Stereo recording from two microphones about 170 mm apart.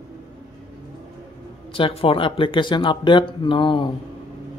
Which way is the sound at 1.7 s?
30° left (ahead or behind).